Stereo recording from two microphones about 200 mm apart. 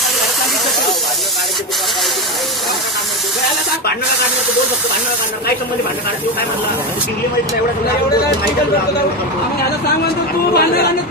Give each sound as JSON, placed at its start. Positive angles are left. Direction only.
{"t": 10.5, "sound": "speech", "side_deg": 50}